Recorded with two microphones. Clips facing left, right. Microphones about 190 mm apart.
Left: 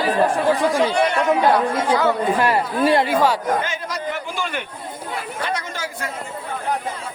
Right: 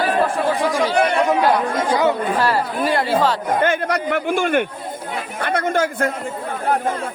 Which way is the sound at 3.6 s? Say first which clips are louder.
Right 7 dB; 60° right (ahead or behind).